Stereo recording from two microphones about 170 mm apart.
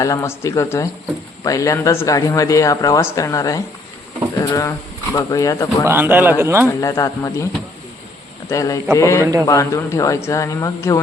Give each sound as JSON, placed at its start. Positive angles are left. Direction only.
{"t": 0.0, "sound": "speech", "side_deg": 20}
{"t": 5.8, "sound": "a man's voice", "side_deg": -10}
{"t": 6.7, "sound": "speech", "side_deg": 20}
{"t": 8.4, "sound": "speech", "side_deg": 20}
{"t": 9.2, "sound": "a man's voice", "side_deg": -20}
{"t": 9.5, "sound": "speech", "side_deg": 20}